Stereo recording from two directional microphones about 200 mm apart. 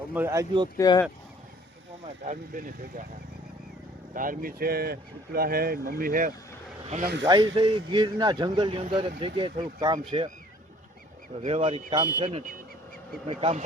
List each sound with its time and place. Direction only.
0.1 s speech: 10° right (ahead or behind)
0.8 s speech: 15° left (ahead or behind)
2.2 s speech: 40° right (ahead or behind)
4.1 s speech: 45° right (ahead or behind)
7.0 s speech: 55° right (ahead or behind)
7.5 s speech: 25° right (ahead or behind)
11.4 s speech: 30° right (ahead or behind)
13.2 s speech: 30° right (ahead or behind)